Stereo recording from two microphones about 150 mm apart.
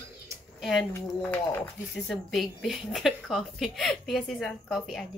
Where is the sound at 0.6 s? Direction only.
Centre (ahead or behind).